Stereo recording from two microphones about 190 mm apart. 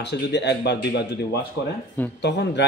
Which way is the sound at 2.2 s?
65° left (ahead or behind).